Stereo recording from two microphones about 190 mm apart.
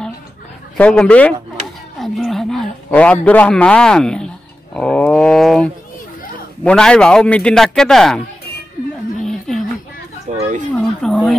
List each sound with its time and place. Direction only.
0.7 s a man's voice: 5° left (ahead or behind)
4.7 s wild animals: 5° left (ahead or behind)
6.6 s a man's voice: 5° left (ahead or behind)
9.2 s a sound: centre (ahead or behind)
10.3 s a sound: 40° right (ahead or behind)
10.7 s speech: 5° left (ahead or behind)